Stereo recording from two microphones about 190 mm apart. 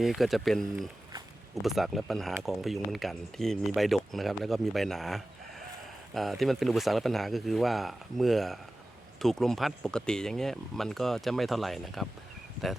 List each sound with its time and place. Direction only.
0.0 s speech: centre (ahead or behind)